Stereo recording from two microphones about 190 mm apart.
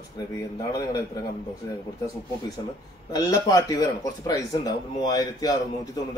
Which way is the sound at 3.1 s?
20° left (ahead or behind).